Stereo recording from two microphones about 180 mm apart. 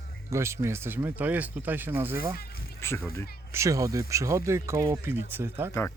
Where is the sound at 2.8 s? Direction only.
15° left (ahead or behind).